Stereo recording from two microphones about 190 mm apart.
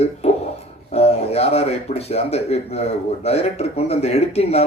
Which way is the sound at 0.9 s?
30° left (ahead or behind).